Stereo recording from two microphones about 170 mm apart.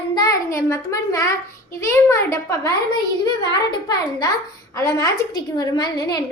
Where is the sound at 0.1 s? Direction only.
20° left (ahead or behind).